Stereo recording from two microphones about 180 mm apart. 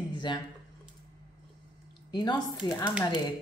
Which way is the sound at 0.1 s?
25° left (ahead or behind).